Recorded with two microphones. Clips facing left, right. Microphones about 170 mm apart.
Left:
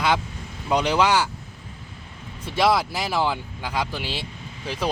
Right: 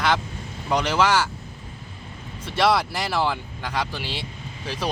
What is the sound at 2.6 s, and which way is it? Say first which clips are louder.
Speech: even; 5° left (ahead or behind).